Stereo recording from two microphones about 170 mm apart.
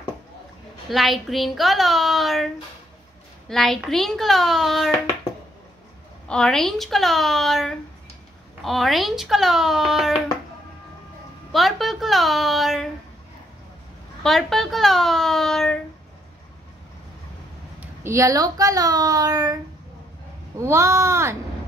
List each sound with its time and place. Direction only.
0.8 s a woman's voice: centre (ahead or behind)
6.2 s a woman's voice: 5° left (ahead or behind)
11.5 s a woman's voice: centre (ahead or behind)
14.2 s a woman's voice: centre (ahead or behind)
17.7 s a woman's voice: 15° right (ahead or behind)